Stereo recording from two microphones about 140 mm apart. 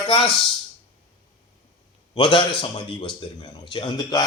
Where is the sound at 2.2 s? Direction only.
35° left (ahead or behind).